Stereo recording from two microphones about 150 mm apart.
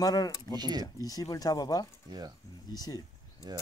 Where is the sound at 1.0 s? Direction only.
25° left (ahead or behind).